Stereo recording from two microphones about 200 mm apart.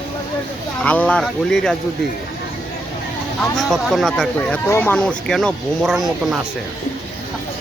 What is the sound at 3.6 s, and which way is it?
Speech, centre (ahead or behind).